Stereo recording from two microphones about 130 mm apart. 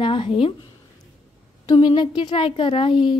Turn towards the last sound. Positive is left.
turn(degrees=40)  # may be behind; listen again after turning